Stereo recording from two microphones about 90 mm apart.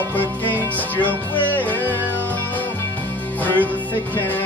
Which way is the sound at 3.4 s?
20° left (ahead or behind).